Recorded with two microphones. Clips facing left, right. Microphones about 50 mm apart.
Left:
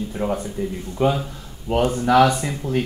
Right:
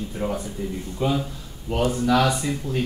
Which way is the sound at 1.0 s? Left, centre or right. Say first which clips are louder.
Left 4 dB; left.